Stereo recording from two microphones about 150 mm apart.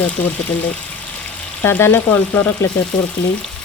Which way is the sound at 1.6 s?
15° left (ahead or behind).